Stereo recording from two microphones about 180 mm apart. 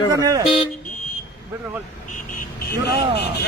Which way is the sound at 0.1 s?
20° right (ahead or behind).